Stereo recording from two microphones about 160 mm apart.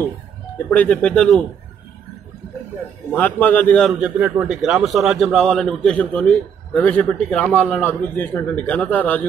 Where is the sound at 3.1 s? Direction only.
10° left (ahead or behind).